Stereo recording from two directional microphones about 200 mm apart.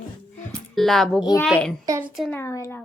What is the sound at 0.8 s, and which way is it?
Speech, centre (ahead or behind).